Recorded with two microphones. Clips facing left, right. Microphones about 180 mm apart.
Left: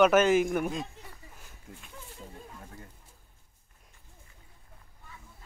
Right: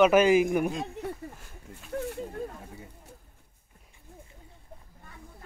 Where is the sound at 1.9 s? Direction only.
70° right (ahead or behind).